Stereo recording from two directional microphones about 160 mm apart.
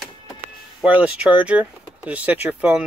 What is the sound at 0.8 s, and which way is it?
Speech, 10° right (ahead or behind).